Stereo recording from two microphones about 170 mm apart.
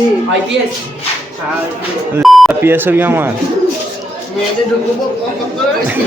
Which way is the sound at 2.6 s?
10° right (ahead or behind).